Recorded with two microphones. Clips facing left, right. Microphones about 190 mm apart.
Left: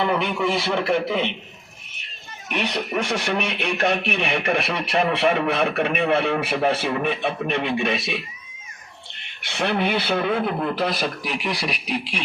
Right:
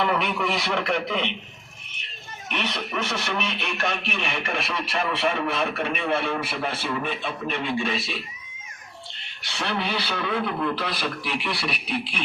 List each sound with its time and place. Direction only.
0.4 s a man's voice: centre (ahead or behind)
2.5 s a man's voice: 10° left (ahead or behind)
4.0 s speech: 60° left (ahead or behind)
9.4 s speech: 55° left (ahead or behind)
10.2 s a man's voice: 25° left (ahead or behind)
10.8 s a man's voice: 45° left (ahead or behind)